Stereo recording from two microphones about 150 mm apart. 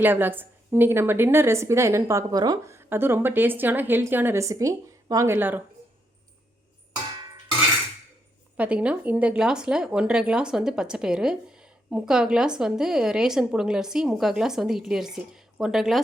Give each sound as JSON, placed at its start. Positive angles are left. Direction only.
{"t": 0.0, "sound": "a woman's voice", "side_deg": -15}
{"t": 8.5, "sound": "speech", "side_deg": -10}